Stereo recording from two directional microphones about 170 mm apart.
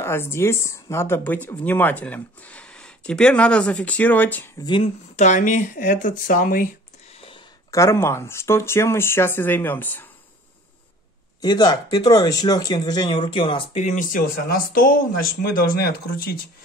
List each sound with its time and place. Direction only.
0.0 s speech: 15° left (ahead or behind)
5.1 s speech: 45° left (ahead or behind)
7.7 s speech: 15° left (ahead or behind)
11.4 s speech: 25° left (ahead or behind); by 16.3 s 65° left (ahead or behind)